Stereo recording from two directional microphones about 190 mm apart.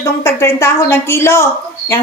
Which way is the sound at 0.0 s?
15° left (ahead or behind).